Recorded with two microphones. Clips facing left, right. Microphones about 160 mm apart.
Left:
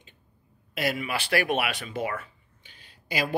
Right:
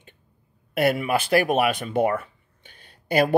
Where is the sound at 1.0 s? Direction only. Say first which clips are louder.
Right 6 dB; 45° right (ahead or behind).